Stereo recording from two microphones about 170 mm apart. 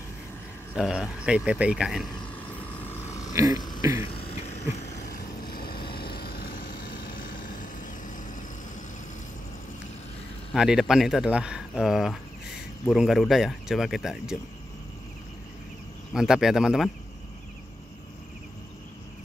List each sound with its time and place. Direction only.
0.7 s speech: 5° right (ahead or behind)
2.8 s vehicle: 15° left (ahead or behind)
3.5 s a sound: 25° left (ahead or behind)
4.3 s vehicle: 40° left (ahead or behind)
5.4 s vehicle: 60° left (ahead or behind)
10.5 s speech: 5° right (ahead or behind)
16.1 s speech: centre (ahead or behind)